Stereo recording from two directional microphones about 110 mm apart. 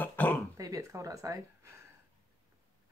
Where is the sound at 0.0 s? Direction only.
15° left (ahead or behind).